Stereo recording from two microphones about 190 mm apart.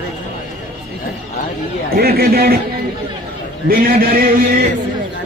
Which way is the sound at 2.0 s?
55° right (ahead or behind).